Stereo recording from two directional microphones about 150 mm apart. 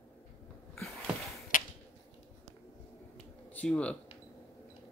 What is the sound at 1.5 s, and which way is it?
Finger snapping, 65° left (ahead or behind).